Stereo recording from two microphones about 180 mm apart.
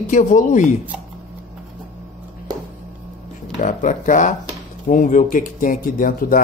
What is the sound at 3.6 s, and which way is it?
Speech, 40° left (ahead or behind).